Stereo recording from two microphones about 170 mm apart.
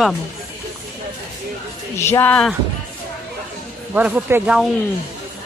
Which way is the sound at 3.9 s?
10° right (ahead or behind).